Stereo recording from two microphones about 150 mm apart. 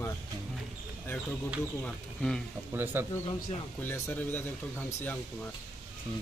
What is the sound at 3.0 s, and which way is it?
Speech, 15° right (ahead or behind).